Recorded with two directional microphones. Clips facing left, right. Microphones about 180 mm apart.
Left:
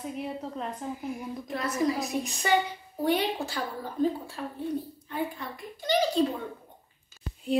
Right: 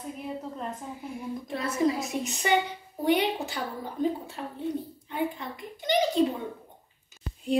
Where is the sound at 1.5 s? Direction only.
30° right (ahead or behind).